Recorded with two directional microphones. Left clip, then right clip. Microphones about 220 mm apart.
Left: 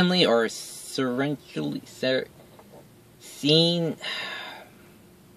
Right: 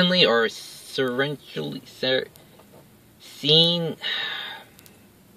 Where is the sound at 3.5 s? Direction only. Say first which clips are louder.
Right 3 dB; 50° right (ahead or behind).